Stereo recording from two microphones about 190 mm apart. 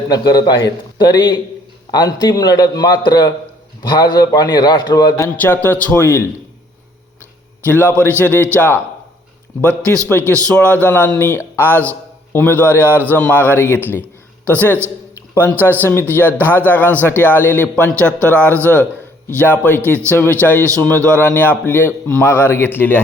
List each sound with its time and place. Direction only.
0.1 s a man's voice: 20° left (ahead or behind)
7.6 s a man's voice: 10° left (ahead or behind)
15.4 s a man's voice: 10° left (ahead or behind)